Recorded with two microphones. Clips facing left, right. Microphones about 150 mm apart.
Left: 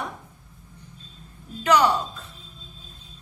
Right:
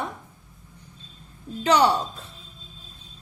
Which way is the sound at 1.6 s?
30° right (ahead or behind).